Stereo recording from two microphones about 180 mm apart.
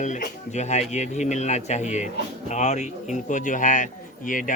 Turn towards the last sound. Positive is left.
turn(degrees=50)  # may be behind; listen again after turning